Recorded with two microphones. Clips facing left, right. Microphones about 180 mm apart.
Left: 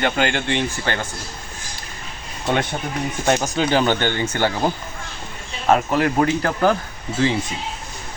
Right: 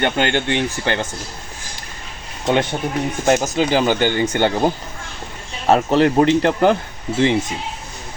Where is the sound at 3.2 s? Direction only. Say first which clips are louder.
Right 3 dB; 5° right (ahead or behind).